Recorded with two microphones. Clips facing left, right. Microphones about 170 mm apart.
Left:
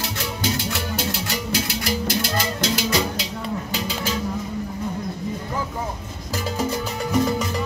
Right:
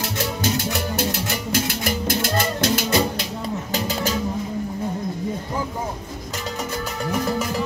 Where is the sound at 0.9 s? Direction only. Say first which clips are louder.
Right 2 dB; 50° right (ahead or behind).